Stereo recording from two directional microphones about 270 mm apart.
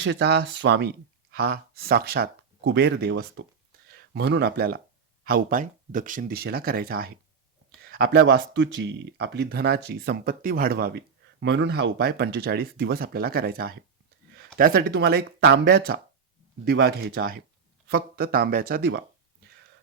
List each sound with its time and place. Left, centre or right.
0.0 s speech: right